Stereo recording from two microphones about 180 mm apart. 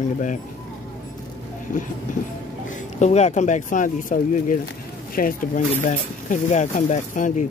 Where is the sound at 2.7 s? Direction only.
40° left (ahead or behind).